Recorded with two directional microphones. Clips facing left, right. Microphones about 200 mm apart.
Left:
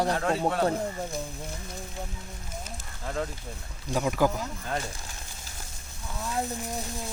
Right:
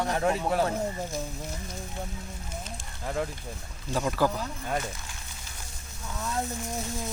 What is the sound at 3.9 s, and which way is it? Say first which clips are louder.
Speech: left 1 dB; 15° left (ahead or behind).